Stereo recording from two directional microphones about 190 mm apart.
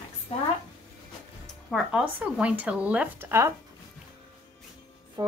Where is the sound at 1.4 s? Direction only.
Centre (ahead or behind).